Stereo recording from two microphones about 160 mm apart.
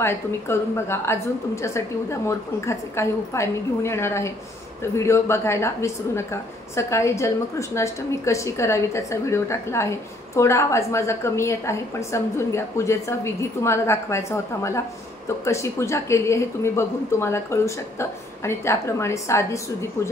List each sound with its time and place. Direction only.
0.0 s a woman's voice: 15° left (ahead or behind)